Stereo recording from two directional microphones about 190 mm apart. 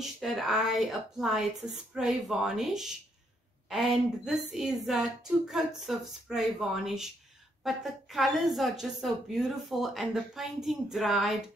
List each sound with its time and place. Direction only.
0.0 s a woman's voice: centre (ahead or behind)